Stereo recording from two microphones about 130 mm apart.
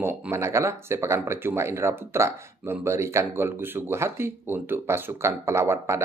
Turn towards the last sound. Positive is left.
turn(degrees=-20)  # may be behind; listen again after turning